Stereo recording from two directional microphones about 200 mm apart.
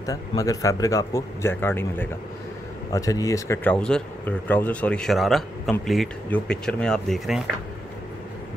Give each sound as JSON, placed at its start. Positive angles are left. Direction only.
{"t": 0.0, "sound": "a man's voice", "side_deg": 15}